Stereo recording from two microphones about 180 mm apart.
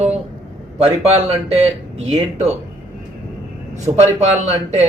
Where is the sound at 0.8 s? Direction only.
35° right (ahead or behind).